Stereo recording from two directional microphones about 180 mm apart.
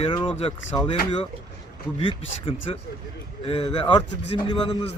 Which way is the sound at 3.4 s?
35° left (ahead or behind).